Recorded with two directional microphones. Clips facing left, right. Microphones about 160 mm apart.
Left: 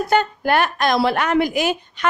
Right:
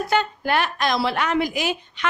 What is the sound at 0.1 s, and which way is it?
A woman's voice, 50° left (ahead or behind).